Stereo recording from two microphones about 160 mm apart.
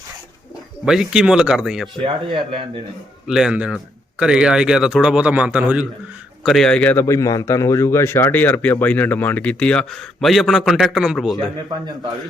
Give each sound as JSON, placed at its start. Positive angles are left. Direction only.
{"t": 0.9, "sound": "a man's voice", "side_deg": -5}
{"t": 2.0, "sound": "speech", "side_deg": -30}
{"t": 3.2, "sound": "a man's voice", "side_deg": -5}